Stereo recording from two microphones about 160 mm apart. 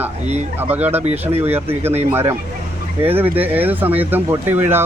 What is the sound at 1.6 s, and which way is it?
Speech, 40° right (ahead or behind).